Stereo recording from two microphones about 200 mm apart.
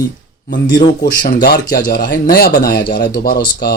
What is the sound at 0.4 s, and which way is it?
Speech, 55° left (ahead or behind).